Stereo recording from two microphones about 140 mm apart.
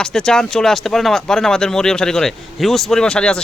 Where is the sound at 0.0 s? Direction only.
5° left (ahead or behind).